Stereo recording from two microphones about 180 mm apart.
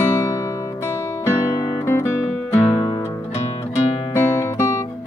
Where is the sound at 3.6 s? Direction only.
30° left (ahead or behind).